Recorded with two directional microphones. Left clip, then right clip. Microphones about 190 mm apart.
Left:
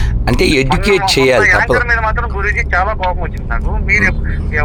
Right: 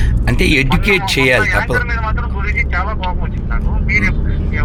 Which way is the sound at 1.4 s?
30° left (ahead or behind).